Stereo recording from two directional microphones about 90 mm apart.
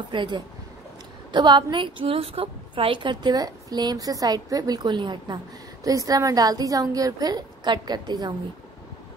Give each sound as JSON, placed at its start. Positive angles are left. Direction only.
{"t": 0.1, "sound": "a woman's voice", "side_deg": -60}
{"t": 5.9, "sound": "a woman's voice", "side_deg": -45}